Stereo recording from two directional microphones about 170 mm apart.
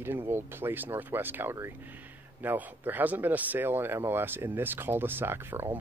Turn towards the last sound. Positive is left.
turn(degrees=-15)  # may be behind; listen again after turning